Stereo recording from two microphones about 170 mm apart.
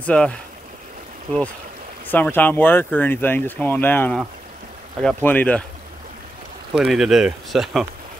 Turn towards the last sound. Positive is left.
turn(degrees=0)  # may be behind; listen again after turning